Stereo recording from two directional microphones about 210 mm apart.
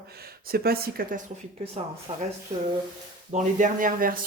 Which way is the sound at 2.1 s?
30° right (ahead or behind).